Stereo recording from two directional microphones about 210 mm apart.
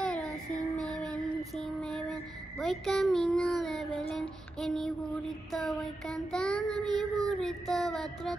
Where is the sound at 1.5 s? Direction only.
Centre (ahead or behind).